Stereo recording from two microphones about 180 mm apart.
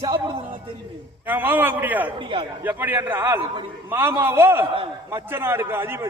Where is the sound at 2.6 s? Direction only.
10° right (ahead or behind).